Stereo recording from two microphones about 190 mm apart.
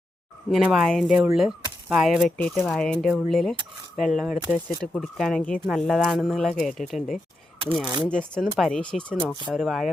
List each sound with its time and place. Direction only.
0.5 s cutlery: centre (ahead or behind)